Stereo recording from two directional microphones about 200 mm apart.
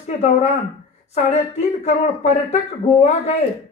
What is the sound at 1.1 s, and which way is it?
Speech, 35° left (ahead or behind).